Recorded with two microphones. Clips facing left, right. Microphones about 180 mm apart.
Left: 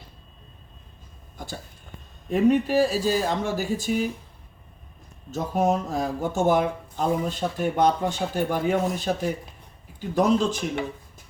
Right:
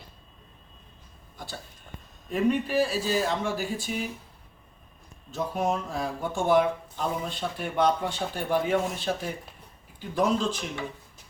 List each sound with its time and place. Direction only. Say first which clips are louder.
2.3 s speech: left 5 dB; 40° left (ahead or behind)
5.3 s speech: left 4 dB; 45° left (ahead or behind)